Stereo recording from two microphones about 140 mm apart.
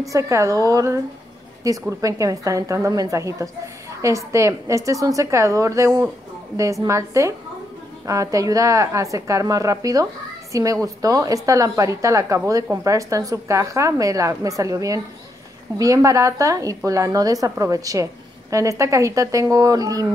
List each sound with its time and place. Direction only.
0.0 s a woman's voice: 20° right (ahead or behind)